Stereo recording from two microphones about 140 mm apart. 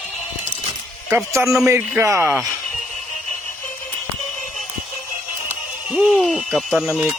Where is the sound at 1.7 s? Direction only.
15° right (ahead or behind).